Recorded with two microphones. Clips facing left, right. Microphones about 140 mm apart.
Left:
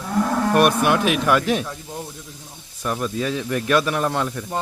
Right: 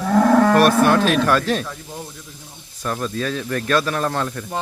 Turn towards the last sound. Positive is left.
turn(degrees=15)  # may be behind; listen again after turning